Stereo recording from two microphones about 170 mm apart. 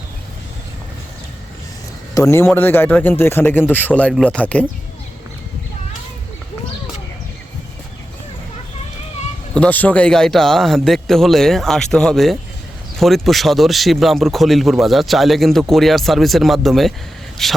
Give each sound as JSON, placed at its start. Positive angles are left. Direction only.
{"t": 2.1, "sound": "a man's voice", "side_deg": 15}
{"t": 9.6, "sound": "a man's voice", "side_deg": 10}